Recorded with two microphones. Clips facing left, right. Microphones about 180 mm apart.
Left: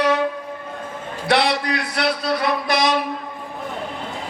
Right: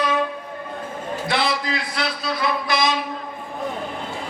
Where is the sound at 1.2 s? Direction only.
70° left (ahead or behind).